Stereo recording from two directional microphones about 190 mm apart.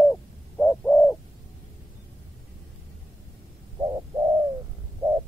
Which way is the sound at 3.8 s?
25° right (ahead or behind).